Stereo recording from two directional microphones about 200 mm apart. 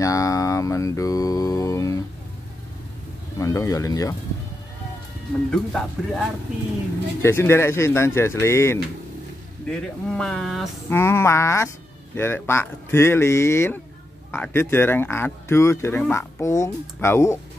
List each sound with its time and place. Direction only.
0.0 s mantra: 15° left (ahead or behind)
3.3 s speech: 15° left (ahead or behind)
5.5 s speech: centre (ahead or behind)
7.2 s speech: 10° left (ahead or behind)
10.9 s speech: 10° left (ahead or behind)